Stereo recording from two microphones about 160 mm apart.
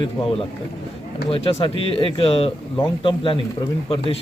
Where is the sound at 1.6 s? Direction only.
35° left (ahead or behind).